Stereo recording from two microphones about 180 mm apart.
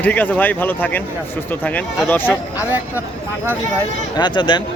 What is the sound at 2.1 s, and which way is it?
Speech, 10° left (ahead or behind).